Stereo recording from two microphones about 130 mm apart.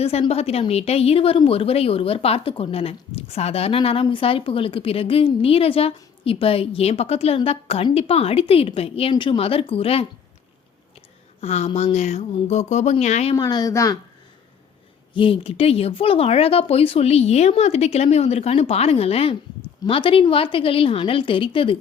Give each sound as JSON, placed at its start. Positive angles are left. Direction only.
{"t": 0.0, "sound": "speech", "side_deg": 50}
{"t": 11.3, "sound": "speech", "side_deg": 55}
{"t": 13.3, "sound": "speech", "side_deg": 30}
{"t": 15.1, "sound": "speech", "side_deg": 45}